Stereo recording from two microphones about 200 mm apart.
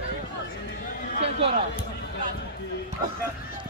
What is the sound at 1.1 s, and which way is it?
Speech, 30° right (ahead or behind).